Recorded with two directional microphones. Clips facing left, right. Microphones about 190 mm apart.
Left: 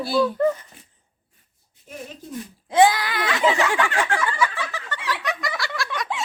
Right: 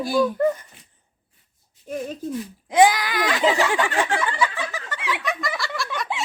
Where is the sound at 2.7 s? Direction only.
15° right (ahead or behind).